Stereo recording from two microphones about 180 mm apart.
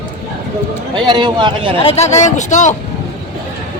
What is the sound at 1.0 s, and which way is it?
Speech, 25° right (ahead or behind).